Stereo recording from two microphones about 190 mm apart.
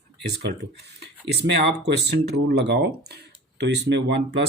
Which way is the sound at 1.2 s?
60° right (ahead or behind).